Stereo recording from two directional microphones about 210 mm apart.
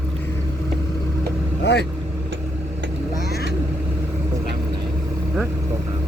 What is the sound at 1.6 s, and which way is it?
Speech, 55° left (ahead or behind).